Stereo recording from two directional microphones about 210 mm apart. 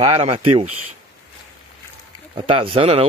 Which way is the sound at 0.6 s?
90° right.